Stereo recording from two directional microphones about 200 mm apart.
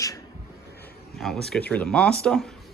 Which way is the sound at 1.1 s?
Centre (ahead or behind).